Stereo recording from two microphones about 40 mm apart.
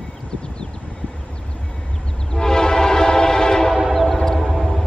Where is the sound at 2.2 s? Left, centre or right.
Centre.